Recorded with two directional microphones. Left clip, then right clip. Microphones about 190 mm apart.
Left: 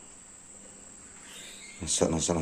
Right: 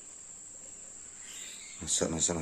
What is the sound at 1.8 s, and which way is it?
Speech, 5° right (ahead or behind).